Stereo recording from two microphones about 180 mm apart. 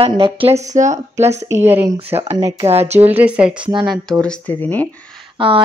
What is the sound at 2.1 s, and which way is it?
Speech, 35° right (ahead or behind).